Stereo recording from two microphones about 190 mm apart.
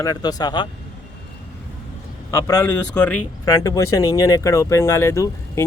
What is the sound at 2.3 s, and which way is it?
Speech, 15° left (ahead or behind).